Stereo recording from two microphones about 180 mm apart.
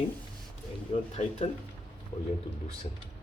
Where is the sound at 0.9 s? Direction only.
35° left (ahead or behind).